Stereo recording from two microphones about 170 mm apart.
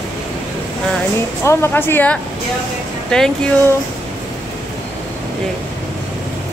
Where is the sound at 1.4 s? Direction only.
15° left (ahead or behind).